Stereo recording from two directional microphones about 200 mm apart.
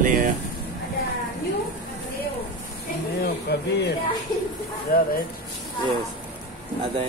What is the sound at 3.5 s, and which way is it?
Speech, 55° left (ahead or behind).